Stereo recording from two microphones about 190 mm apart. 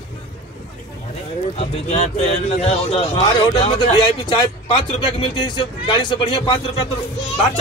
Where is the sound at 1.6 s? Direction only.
35° left (ahead or behind).